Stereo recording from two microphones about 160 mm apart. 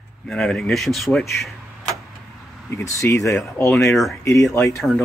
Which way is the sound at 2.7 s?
20° left (ahead or behind).